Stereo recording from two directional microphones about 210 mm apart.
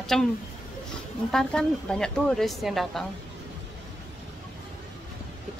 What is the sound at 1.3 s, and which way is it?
Speech, 5° left (ahead or behind).